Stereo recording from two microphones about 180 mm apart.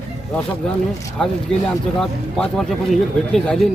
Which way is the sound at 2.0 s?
5° left (ahead or behind).